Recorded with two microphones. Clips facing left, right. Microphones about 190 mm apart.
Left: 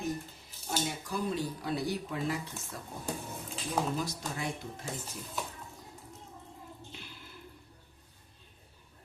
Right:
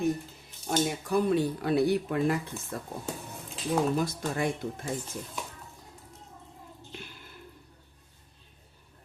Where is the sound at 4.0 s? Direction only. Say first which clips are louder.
Right 7 dB; 55° right (ahead or behind).